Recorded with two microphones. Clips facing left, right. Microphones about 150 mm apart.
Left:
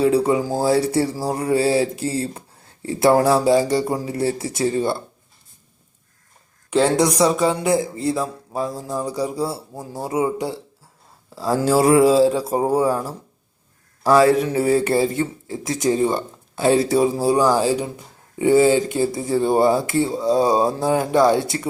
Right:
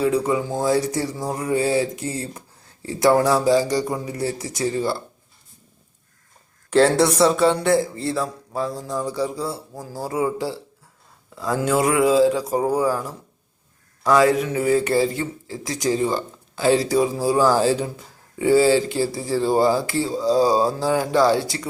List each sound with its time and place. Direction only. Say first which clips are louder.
0.0 s speech: left 3 dB; 30° left (ahead or behind)
6.7 s speech: right 1 dB; 5° left (ahead or behind)
7.7 s speech: right 1 dB; 20° left (ahead or behind)
7.9 s speech: left 3 dB; centre (ahead or behind)
8.2 s speech: left 1 dB; 25° left (ahead or behind)
9.8 s speech: left 2 dB; 25° left (ahead or behind)
17.6 s speech: even; 10° left (ahead or behind)